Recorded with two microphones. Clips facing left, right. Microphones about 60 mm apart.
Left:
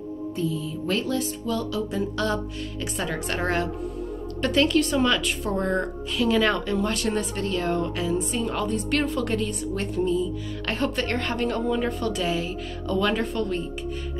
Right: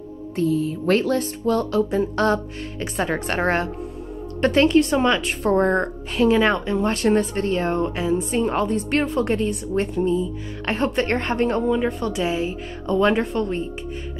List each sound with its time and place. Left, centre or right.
0.4 s speech: right
5.4 s a woman's voice: right
6.2 s a woman's voice: right
11.6 s a woman's voice: centre